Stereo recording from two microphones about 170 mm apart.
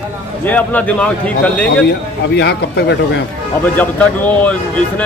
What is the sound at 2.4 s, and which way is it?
Speech, 80° left.